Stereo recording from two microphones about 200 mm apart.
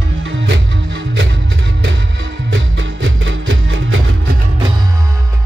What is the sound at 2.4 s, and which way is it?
Music, 70° right (ahead or behind).